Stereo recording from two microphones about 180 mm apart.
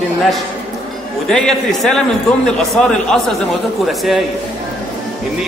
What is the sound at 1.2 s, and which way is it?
A man's voice, 5° left (ahead or behind).